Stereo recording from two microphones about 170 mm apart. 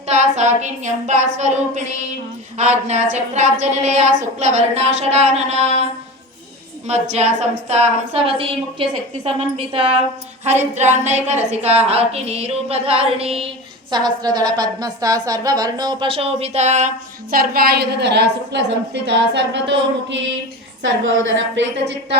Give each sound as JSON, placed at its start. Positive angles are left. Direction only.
{"t": 0.1, "sound": "a woman's voice", "side_deg": -45}
{"t": 6.8, "sound": "a woman's voice", "side_deg": -40}
{"t": 13.9, "sound": "a woman's voice", "side_deg": -25}
{"t": 17.3, "sound": "a woman's voice", "side_deg": -60}
{"t": 19.0, "sound": "a sound", "side_deg": -90}
{"t": 21.5, "sound": "a sound", "side_deg": -90}